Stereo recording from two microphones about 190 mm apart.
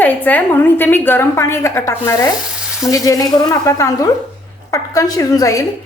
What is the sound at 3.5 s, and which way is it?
A woman's voice, 15° left (ahead or behind).